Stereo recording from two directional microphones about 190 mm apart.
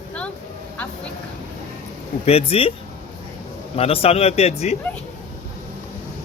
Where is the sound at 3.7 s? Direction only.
30° left (ahead or behind).